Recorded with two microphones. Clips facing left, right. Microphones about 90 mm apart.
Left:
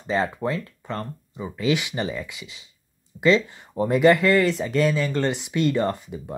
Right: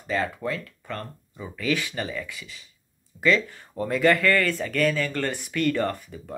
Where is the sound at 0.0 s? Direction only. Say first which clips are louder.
Left 3 dB; 25° left (ahead or behind).